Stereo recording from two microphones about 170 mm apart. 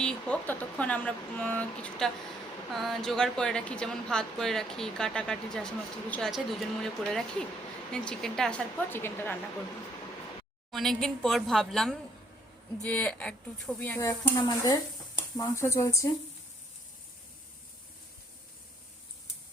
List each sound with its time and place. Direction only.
0.0 s speech: 10° left (ahead or behind)
10.7 s speech: centre (ahead or behind); by 16.0 s 15° left (ahead or behind)